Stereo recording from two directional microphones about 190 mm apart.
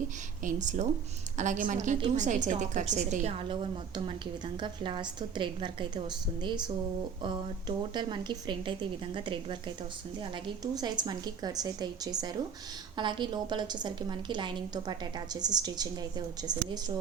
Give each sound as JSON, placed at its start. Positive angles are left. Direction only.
{"t": 0.4, "sound": "a woman's voice", "side_deg": -40}
{"t": 7.9, "sound": "a woman's voice", "side_deg": -25}